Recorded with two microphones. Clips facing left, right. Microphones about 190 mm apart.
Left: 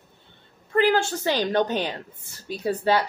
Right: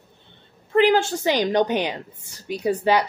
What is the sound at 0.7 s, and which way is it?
A woman's voice, 15° right (ahead or behind).